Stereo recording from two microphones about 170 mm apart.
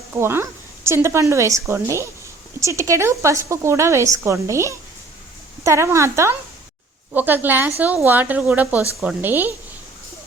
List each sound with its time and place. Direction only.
0.1 s a woman's voice: 15° right (ahead or behind)